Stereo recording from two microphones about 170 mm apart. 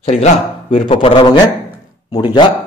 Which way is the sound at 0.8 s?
30° left (ahead or behind).